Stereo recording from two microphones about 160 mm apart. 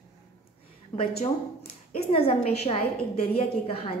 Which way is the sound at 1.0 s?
35° left (ahead or behind).